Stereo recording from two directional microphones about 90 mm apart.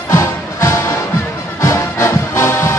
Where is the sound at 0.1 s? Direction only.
35° left (ahead or behind).